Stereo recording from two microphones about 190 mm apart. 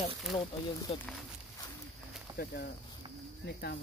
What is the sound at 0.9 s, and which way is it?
Speech, 30° left (ahead or behind).